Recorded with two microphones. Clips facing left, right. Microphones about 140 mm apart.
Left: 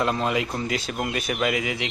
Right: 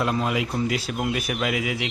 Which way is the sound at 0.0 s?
5° right (ahead or behind).